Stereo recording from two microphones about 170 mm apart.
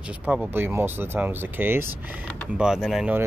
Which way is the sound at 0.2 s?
10° right (ahead or behind).